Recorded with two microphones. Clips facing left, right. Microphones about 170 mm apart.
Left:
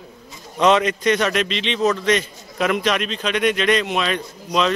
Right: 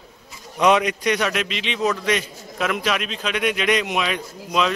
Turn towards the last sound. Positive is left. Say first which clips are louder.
# left 2 dB
turn(degrees=-5)  # may be behind; listen again after turning